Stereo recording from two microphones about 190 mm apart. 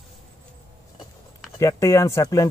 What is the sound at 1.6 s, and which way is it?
Speech, 15° left (ahead or behind).